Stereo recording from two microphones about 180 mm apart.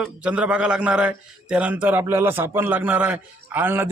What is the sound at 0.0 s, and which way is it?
A man's voice, 5° right (ahead or behind).